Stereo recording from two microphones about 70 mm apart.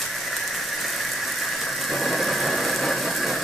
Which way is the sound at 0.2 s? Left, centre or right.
Centre.